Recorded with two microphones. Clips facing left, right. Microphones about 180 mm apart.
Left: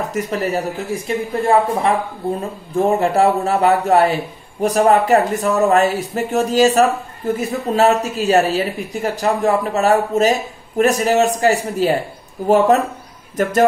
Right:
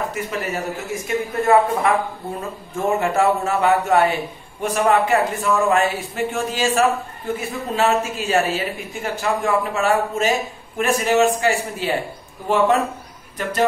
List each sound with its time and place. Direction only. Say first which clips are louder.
0.1 s a man's voice: left 5 dB; 35° left (ahead or behind)